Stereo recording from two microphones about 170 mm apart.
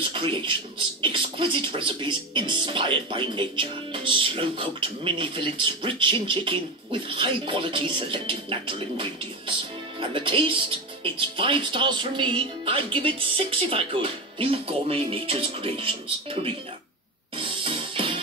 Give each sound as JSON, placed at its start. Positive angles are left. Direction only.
{"t": 0.1, "sound": "speech", "side_deg": -30}
{"t": 17.4, "sound": "music", "side_deg": -30}